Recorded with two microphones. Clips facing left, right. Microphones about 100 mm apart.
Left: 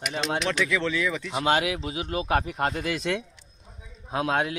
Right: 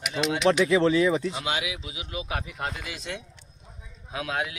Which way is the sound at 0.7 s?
35° right (ahead or behind).